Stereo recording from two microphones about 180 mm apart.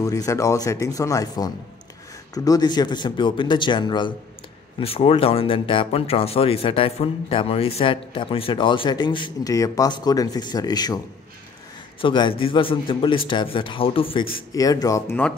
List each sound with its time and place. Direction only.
0.0 s speech: 15° left (ahead or behind)
12.0 s speech: 25° left (ahead or behind)
14.3 s speech: 20° left (ahead or behind)